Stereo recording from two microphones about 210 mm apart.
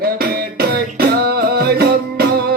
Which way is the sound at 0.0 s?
45° right (ahead or behind).